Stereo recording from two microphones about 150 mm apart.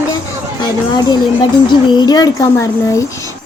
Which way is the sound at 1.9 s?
30° left (ahead or behind).